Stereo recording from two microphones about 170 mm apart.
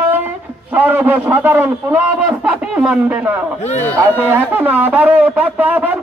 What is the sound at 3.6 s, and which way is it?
Speech, 40° left (ahead or behind).